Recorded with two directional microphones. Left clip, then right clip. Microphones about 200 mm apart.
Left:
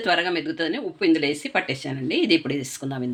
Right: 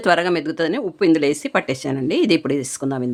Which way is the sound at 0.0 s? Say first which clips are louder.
Right 5 dB; 45° right (ahead or behind).